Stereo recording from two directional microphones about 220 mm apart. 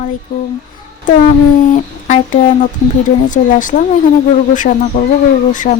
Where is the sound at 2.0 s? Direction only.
35° left (ahead or behind).